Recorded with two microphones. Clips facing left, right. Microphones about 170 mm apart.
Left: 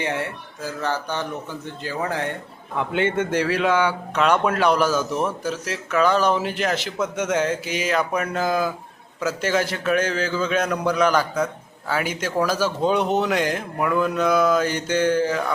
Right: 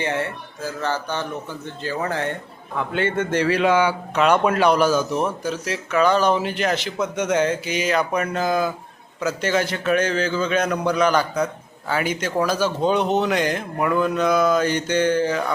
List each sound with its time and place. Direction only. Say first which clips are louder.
0.8 s a man's voice: even; 15° left (ahead or behind)
3.3 s speech: right 4 dB; centre (ahead or behind)